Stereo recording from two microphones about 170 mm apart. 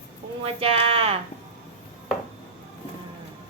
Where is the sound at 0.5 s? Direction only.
35° right (ahead or behind).